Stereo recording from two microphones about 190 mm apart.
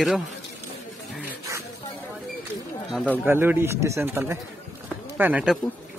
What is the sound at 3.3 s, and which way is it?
Speech, 10° right (ahead or behind).